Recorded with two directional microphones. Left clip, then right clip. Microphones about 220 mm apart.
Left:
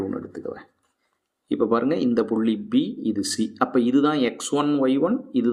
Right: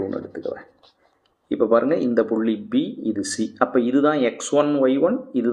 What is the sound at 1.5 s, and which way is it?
Speech, 50° left (ahead or behind).